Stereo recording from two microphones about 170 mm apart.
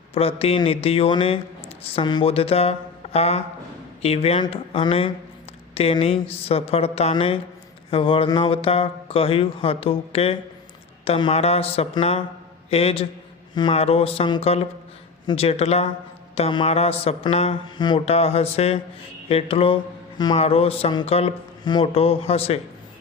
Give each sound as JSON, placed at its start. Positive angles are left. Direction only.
{"t": 0.1, "sound": "speech", "side_deg": 35}